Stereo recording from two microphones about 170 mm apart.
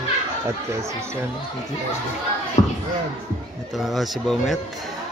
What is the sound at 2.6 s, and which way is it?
Speech, 45° left (ahead or behind).